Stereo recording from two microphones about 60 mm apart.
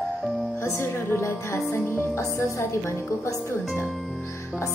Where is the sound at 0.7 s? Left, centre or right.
Left.